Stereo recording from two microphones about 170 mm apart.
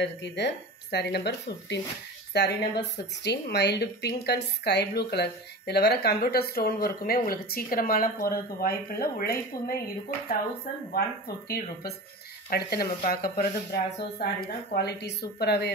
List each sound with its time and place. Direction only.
0.0 s speech: 90° left
0.9 s a woman's voice: 80° left; by 9.4 s 65° left (ahead or behind)
10.9 s a woman's voice: 65° left (ahead or behind)